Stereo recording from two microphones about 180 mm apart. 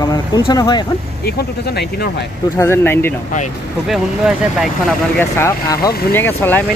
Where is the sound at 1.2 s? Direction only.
65° left (ahead or behind).